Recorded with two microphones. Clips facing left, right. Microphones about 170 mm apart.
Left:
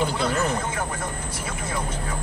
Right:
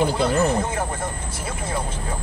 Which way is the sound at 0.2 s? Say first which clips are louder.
Right 4 dB; 30° right (ahead or behind).